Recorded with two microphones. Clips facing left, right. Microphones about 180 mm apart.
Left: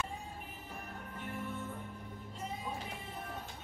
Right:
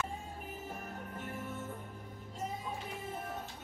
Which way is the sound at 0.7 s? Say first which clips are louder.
Right 3 dB; 45° right (ahead or behind).